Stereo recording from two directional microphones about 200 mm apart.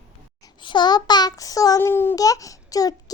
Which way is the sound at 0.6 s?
20° left (ahead or behind).